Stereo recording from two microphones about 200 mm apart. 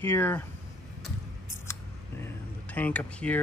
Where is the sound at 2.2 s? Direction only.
10° left (ahead or behind).